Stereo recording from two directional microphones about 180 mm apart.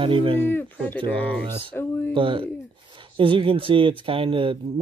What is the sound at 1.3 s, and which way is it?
Speech, 10° left (ahead or behind).